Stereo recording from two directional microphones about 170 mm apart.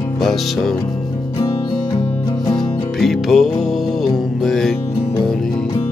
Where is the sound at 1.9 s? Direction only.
25° left (ahead or behind).